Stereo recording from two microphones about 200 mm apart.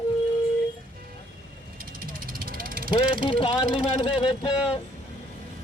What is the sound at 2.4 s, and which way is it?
Vehicle, 45° right (ahead or behind).